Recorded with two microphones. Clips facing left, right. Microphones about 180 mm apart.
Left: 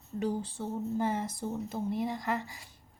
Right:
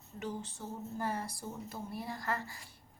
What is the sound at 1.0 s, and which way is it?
A woman's voice, 20° left (ahead or behind).